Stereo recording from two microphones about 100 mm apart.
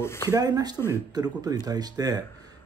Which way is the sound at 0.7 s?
25° left (ahead or behind).